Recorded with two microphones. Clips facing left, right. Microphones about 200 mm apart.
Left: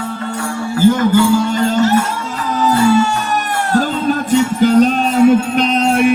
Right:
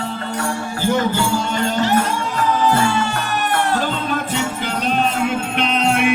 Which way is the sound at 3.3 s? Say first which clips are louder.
Left 3 dB; 45° left (ahead or behind).